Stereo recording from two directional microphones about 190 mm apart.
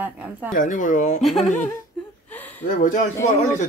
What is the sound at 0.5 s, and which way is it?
Speech, 45° left (ahead or behind).